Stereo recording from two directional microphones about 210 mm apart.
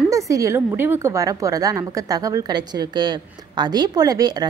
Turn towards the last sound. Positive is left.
turn(degrees=-20)  # may be behind; listen again after turning